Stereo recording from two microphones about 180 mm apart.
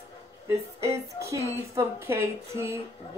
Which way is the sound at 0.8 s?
15° right (ahead or behind).